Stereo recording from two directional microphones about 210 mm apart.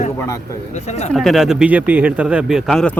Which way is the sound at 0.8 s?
30° left (ahead or behind).